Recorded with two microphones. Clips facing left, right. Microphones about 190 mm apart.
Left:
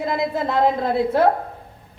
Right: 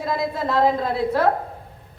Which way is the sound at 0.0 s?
20° left (ahead or behind).